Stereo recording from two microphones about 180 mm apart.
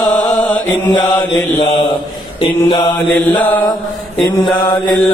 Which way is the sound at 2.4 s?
30° left (ahead or behind).